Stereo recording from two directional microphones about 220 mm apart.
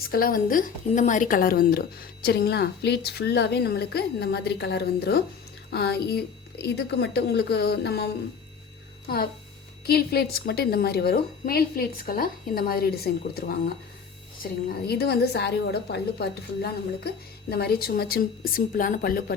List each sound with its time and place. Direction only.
0.1 s a woman's voice: 40° left (ahead or behind)